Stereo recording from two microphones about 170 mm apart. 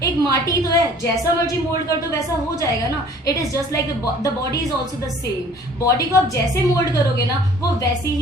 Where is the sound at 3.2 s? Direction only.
20° left (ahead or behind).